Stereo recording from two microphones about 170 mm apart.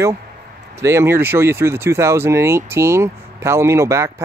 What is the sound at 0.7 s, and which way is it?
Speech, 15° right (ahead or behind).